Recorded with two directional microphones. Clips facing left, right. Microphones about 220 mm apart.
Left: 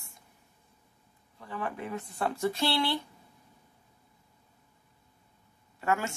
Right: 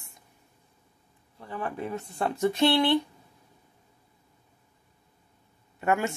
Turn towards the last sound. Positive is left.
turn(degrees=-15)  # may be behind; listen again after turning